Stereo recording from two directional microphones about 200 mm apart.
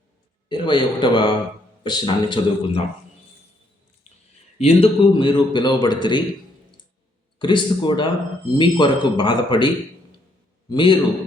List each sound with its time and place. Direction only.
0.4 s a man's voice: 25° left (ahead or behind)
4.5 s a man's voice: 30° left (ahead or behind)
7.3 s a man's voice: 25° left (ahead or behind)
10.7 s a man's voice: 25° left (ahead or behind)